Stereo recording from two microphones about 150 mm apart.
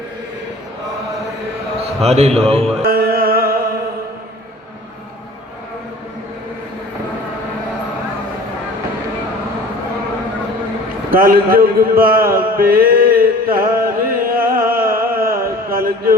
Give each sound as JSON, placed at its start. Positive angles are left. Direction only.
{"t": 2.0, "sound": "speech", "side_deg": -45}
{"t": 2.8, "sound": "music", "side_deg": -85}
{"t": 11.1, "sound": "a sound", "side_deg": -75}